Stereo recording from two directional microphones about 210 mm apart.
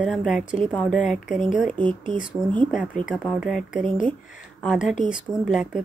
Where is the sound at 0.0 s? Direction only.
Centre (ahead or behind).